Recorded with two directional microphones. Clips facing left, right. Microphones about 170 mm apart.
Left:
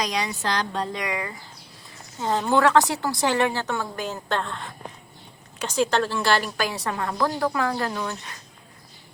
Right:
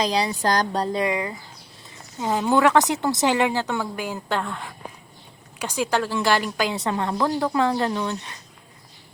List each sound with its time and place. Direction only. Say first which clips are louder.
0.0 s a woman's voice: right 5 dB; 30° right (ahead or behind)
2.2 s a woman's voice: right 1 dB; 10° right (ahead or behind)